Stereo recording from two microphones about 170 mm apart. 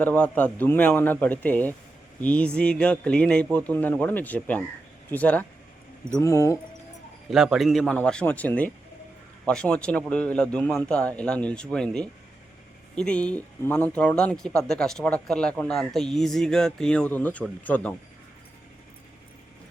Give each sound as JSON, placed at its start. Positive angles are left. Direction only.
{"t": 0.0, "sound": "speech", "side_deg": 10}
{"t": 7.3, "sound": "a man's voice", "side_deg": 0}